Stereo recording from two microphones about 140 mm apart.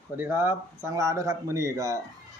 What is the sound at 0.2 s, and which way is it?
A man's voice, 15° right (ahead or behind).